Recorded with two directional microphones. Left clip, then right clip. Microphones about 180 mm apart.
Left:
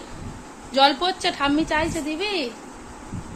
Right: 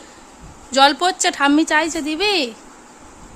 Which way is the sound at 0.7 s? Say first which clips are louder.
Right 4 dB; 55° right (ahead or behind).